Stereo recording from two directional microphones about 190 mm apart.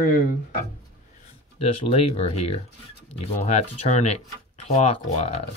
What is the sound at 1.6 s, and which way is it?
Speech, 30° left (ahead or behind).